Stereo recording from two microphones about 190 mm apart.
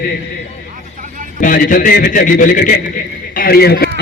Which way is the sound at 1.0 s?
45° right (ahead or behind).